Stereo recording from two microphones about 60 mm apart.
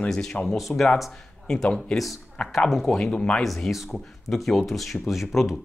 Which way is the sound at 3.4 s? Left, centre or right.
Centre.